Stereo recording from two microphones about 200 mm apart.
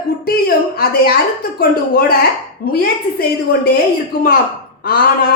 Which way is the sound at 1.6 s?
45° left (ahead or behind).